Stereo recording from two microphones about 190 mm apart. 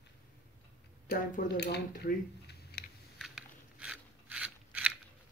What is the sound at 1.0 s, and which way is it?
Speech, 55° left (ahead or behind).